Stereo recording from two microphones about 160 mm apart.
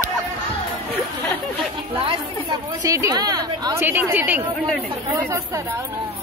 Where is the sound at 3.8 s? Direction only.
10° right (ahead or behind).